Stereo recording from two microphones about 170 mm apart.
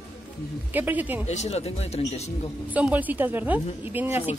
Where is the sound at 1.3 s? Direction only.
40° left (ahead or behind).